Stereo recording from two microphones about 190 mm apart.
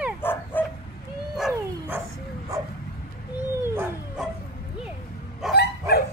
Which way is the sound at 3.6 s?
10° right (ahead or behind).